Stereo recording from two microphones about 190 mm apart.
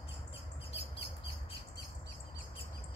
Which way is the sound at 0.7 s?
30° left (ahead or behind).